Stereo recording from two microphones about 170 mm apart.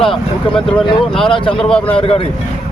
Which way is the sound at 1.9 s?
35° left (ahead or behind).